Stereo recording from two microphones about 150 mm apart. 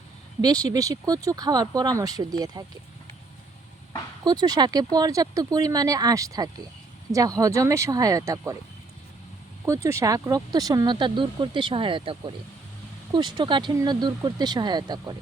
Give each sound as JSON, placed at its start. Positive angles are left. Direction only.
{"t": 0.4, "sound": "speech", "side_deg": -25}
{"t": 4.2, "sound": "speech", "side_deg": -25}
{"t": 9.6, "sound": "speech", "side_deg": -20}